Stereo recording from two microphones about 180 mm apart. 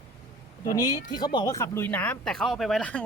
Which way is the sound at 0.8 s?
25° left (ahead or behind).